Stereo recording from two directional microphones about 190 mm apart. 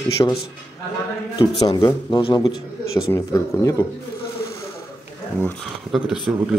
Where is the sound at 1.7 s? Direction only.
20° left (ahead or behind).